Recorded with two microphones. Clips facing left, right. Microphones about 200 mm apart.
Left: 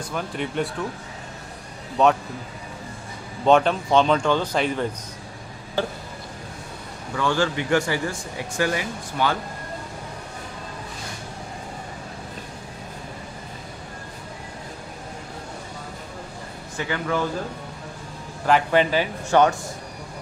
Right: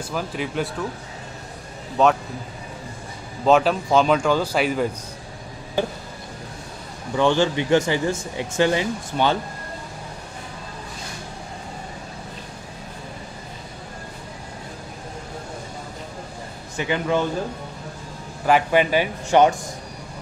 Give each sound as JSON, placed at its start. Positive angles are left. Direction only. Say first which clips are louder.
{"t": 0.1, "sound": "speech", "louder": "right 1 dB", "side_deg": 0}
{"t": 2.0, "sound": "speech", "louder": "right 1 dB", "side_deg": 0}
{"t": 3.4, "sound": "speech", "louder": "even", "side_deg": -5}
{"t": 7.2, "sound": "speech", "louder": "right 4 dB", "side_deg": -20}
{"t": 16.7, "sound": "speech", "louder": "right 4 dB", "side_deg": -20}
{"t": 18.4, "sound": "speech", "louder": "right 1 dB", "side_deg": -10}